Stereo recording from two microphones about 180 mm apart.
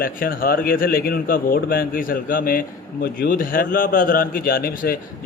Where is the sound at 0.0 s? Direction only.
55° left (ahead or behind).